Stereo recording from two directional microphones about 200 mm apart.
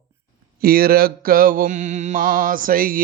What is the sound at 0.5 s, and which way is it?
Mantra, 50° right (ahead or behind).